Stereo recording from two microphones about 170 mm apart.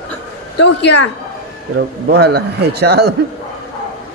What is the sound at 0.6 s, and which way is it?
Speech, 90° left.